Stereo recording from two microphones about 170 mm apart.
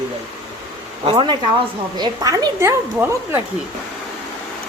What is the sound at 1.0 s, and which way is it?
Speech, 30° right (ahead or behind).